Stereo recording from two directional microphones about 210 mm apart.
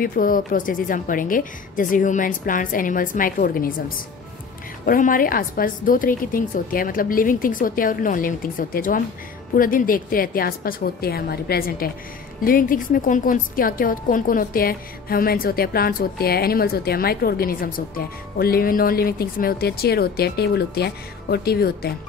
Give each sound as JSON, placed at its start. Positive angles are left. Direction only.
{"t": 0.0, "sound": "a woman's voice", "side_deg": 40}
{"t": 4.8, "sound": "a woman's voice", "side_deg": 40}